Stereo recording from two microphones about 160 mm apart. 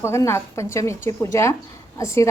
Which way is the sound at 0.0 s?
15° left (ahead or behind).